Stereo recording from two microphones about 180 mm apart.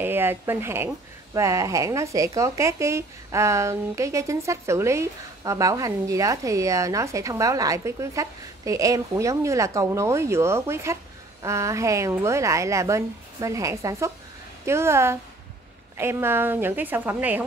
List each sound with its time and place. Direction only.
0.0 s speech: 10° right (ahead or behind)